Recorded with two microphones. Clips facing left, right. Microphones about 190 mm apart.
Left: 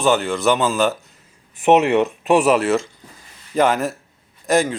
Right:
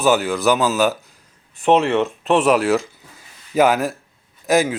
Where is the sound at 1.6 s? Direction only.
15° left (ahead or behind).